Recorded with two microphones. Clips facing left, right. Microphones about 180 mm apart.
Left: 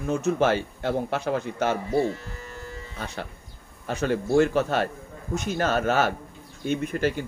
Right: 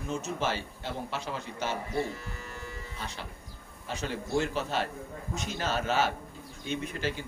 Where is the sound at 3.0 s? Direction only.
50° left (ahead or behind).